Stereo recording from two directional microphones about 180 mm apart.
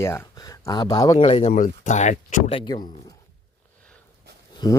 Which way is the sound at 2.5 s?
25° left (ahead or behind).